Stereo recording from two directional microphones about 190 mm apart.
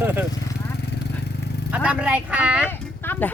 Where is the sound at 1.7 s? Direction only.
5° right (ahead or behind).